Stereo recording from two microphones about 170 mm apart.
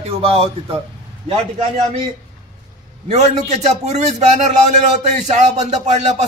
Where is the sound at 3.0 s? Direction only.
40° right (ahead or behind).